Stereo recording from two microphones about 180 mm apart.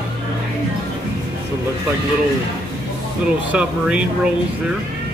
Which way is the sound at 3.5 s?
5° right (ahead or behind).